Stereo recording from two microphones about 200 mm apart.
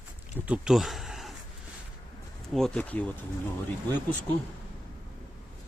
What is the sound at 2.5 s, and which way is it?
Speech, centre (ahead or behind).